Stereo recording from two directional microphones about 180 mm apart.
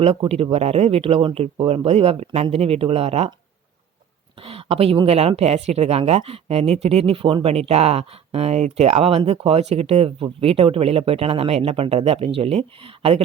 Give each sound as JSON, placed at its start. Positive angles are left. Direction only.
{"t": 0.0, "sound": "speech", "side_deg": -35}
{"t": 4.4, "sound": "speech", "side_deg": -30}